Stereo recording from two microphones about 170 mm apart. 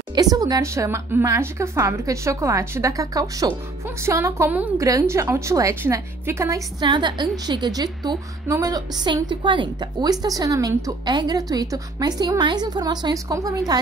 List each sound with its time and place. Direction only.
0.1 s a woman's voice: 20° right (ahead or behind)